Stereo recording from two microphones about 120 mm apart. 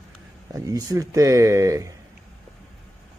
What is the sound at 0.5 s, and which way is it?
Speech, 30° right (ahead or behind).